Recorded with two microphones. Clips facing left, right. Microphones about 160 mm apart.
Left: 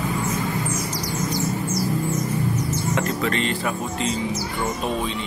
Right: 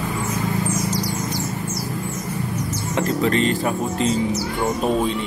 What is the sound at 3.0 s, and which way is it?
Speech, 35° right (ahead or behind).